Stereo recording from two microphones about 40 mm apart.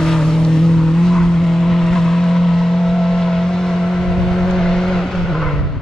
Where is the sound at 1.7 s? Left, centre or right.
Centre.